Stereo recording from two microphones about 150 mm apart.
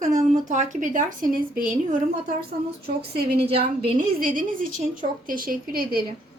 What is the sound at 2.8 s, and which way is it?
Speech, 90° right.